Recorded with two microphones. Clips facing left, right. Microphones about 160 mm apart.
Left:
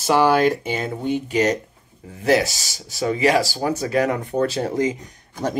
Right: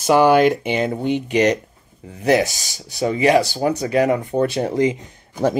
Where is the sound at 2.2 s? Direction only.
20° right (ahead or behind).